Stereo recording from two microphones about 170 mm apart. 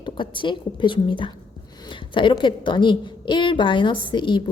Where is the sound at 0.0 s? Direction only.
30° left (ahead or behind).